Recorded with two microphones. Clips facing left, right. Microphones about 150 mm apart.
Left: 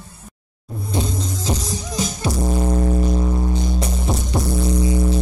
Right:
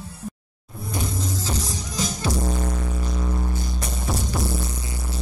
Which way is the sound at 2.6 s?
30° left (ahead or behind).